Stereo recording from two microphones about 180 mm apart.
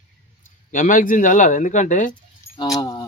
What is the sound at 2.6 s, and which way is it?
Speech, 25° left (ahead or behind).